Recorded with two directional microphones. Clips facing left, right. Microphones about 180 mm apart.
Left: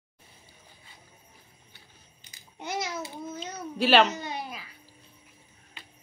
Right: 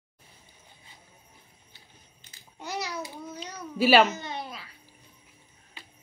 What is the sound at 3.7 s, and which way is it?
Speech, 5° right (ahead or behind).